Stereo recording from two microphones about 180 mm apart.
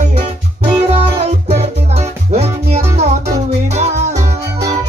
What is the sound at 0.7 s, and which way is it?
Music, 35° right (ahead or behind).